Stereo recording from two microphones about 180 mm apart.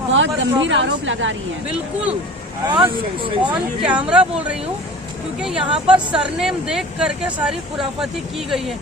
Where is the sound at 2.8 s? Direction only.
30° right (ahead or behind).